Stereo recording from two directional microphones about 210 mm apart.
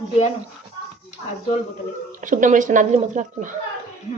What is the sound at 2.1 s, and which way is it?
Speech, 40° right (ahead or behind).